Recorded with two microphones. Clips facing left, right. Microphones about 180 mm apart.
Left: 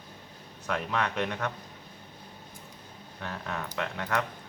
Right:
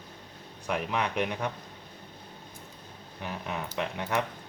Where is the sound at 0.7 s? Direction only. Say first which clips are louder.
Even; 15° right (ahead or behind).